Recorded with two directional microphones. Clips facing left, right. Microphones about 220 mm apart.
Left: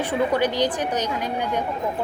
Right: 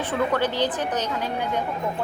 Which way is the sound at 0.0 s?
15° left (ahead or behind).